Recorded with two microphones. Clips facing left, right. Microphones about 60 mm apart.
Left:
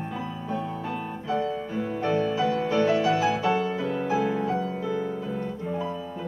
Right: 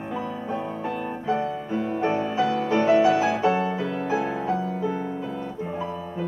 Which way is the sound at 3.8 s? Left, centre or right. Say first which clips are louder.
Even; right.